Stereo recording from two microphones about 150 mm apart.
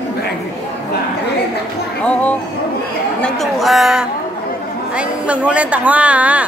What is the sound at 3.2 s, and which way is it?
Chatter, 5° left (ahead or behind).